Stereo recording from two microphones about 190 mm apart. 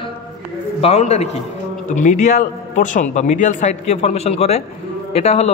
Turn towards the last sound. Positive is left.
turn(degrees=35)  # may be behind; listen again after turning